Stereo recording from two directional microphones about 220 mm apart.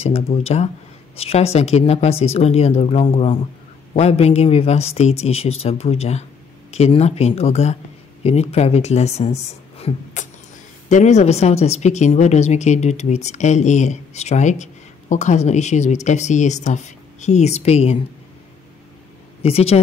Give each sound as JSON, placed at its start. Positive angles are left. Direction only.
{"t": 0.3, "sound": "a woman's voice", "side_deg": 35}
{"t": 19.4, "sound": "speech", "side_deg": 25}